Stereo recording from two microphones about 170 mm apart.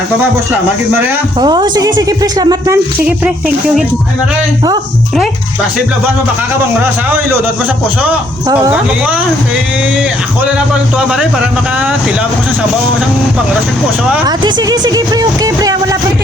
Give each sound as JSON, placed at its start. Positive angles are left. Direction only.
{"t": 1.4, "sound": "speech", "side_deg": -25}
{"t": 3.1, "sound": "speech", "side_deg": -5}
{"t": 10.9, "sound": "a man's voice", "side_deg": -5}
{"t": 14.3, "sound": "speech", "side_deg": -25}